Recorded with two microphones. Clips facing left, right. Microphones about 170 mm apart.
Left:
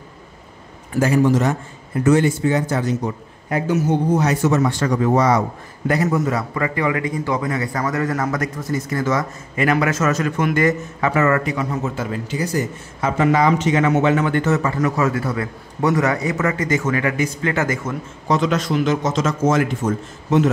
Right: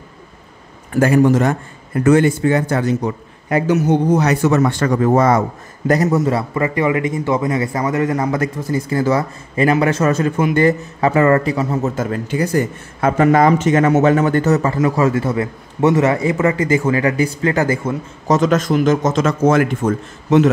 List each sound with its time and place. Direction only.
0.9 s a man's voice: 55° right (ahead or behind)
3.4 s a man's voice: 80° right; by 5.4 s 50° right (ahead or behind)
5.9 s a man's voice: 35° right (ahead or behind)
18.3 s a man's voice: 45° right (ahead or behind); by 20.4 s 65° right (ahead or behind)